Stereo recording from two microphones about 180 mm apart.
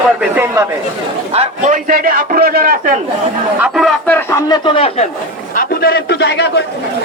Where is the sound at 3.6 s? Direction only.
Centre (ahead or behind).